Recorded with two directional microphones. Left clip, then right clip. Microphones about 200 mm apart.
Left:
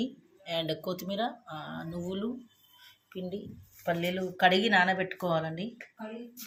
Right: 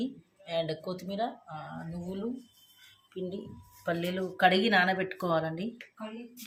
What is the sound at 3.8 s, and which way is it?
Speech, centre (ahead or behind).